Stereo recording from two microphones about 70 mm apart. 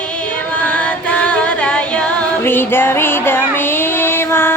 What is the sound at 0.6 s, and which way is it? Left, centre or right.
Music, left.